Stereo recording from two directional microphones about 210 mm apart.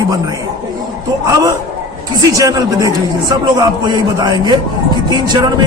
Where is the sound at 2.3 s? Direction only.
15° right (ahead or behind).